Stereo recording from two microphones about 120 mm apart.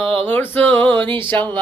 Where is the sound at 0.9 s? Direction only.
45° right (ahead or behind).